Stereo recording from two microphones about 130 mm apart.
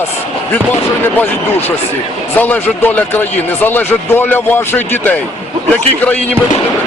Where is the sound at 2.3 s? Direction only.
15° left (ahead or behind).